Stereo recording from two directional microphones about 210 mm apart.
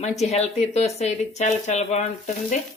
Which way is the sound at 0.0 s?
30° left (ahead or behind).